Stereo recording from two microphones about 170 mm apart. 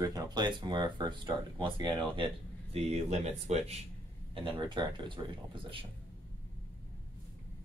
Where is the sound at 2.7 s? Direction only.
40° right (ahead or behind).